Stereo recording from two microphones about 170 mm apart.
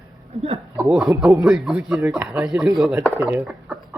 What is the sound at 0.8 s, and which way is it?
Speech, 5° right (ahead or behind).